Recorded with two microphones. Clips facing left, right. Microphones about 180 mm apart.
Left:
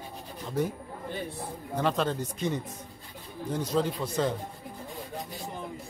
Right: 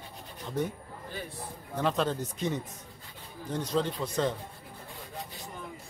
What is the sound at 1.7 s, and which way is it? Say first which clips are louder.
Speech: left 1 dB; centre (ahead or behind).